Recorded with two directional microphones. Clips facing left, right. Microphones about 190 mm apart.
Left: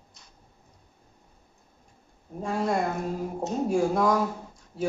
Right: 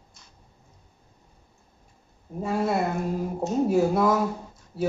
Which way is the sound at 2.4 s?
5° right (ahead or behind).